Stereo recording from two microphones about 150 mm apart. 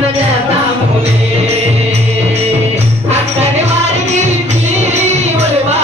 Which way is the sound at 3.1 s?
45° right (ahead or behind).